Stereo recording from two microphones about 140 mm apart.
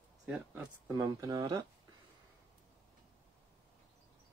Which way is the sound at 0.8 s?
25° right (ahead or behind).